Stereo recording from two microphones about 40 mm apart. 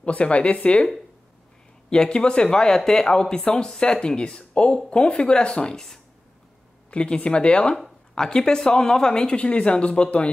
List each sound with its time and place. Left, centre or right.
0.0 s speech: left
6.9 s speech: left